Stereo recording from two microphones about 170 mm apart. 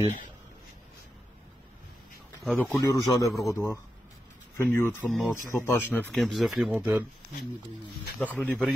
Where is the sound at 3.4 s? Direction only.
15° left (ahead or behind).